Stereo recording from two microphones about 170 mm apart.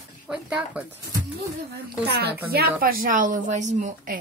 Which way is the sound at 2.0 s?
70° right (ahead or behind).